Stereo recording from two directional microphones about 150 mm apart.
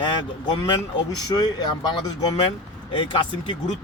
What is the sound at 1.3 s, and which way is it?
Speech, 25° left (ahead or behind).